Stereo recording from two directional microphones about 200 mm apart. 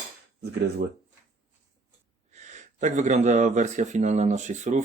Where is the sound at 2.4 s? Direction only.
35° right (ahead or behind).